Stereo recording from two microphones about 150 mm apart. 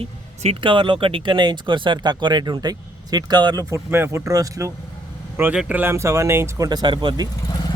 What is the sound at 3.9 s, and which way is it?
Speech, 15° right (ahead or behind).